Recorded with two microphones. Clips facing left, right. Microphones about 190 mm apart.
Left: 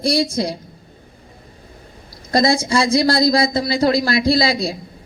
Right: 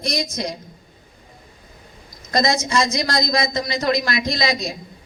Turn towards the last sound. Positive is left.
turn(degrees=30)  # may be behind; listen again after turning